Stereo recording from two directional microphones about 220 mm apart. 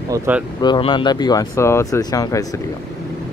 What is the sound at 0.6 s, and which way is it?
Speech, 20° left (ahead or behind).